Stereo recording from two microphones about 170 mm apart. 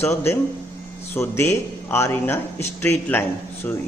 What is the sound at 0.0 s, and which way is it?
Speech, 15° left (ahead or behind).